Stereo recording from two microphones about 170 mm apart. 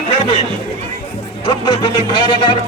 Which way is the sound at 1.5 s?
25° left (ahead or behind).